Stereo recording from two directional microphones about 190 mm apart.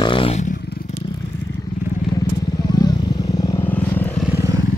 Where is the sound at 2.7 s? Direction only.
20° left (ahead or behind).